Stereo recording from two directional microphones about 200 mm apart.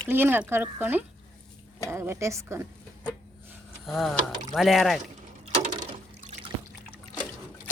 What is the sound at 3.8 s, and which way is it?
Speech, centre (ahead or behind).